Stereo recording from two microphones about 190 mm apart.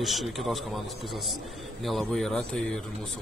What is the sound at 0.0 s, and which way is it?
A man's voice, centre (ahead or behind).